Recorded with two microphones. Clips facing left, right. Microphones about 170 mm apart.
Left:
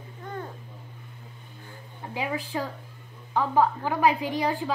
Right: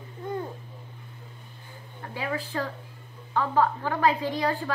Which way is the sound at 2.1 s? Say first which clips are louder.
Left 1 dB; 15° left (ahead or behind).